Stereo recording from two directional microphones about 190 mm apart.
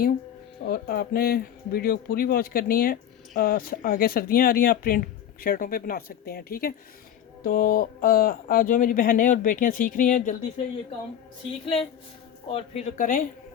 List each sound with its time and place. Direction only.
0.6 s speech: 55° left (ahead or behind)
11.6 s a woman's voice: 30° left (ahead or behind)